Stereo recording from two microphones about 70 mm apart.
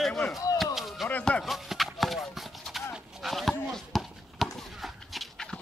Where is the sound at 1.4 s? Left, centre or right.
Centre.